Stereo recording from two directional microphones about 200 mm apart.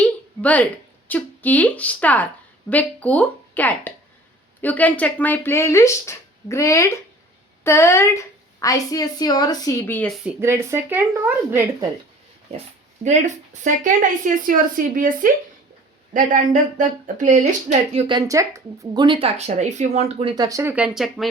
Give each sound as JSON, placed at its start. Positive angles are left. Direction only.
{"t": 0.0, "sound": "a woman's voice", "side_deg": 5}
{"t": 10.2, "sound": "speech", "side_deg": -15}
{"t": 13.1, "sound": "a woman's voice", "side_deg": -35}
{"t": 18.1, "sound": "speech", "side_deg": -15}